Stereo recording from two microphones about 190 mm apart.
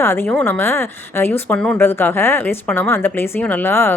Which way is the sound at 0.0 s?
15° left (ahead or behind).